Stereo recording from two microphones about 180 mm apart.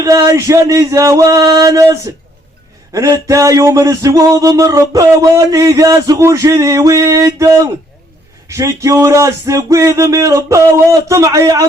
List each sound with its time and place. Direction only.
0.0 s speech: 20° right (ahead or behind)